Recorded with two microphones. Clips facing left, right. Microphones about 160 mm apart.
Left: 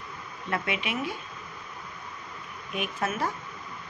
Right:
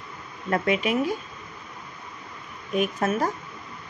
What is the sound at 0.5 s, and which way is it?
Speech, 40° right (ahead or behind).